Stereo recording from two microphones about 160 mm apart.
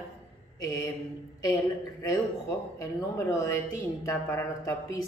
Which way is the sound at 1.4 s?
20° left (ahead or behind).